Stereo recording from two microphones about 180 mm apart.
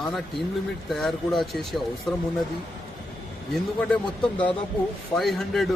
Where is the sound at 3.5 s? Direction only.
5° left (ahead or behind).